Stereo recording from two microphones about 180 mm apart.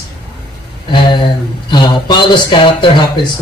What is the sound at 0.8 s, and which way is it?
Speech, 25° left (ahead or behind).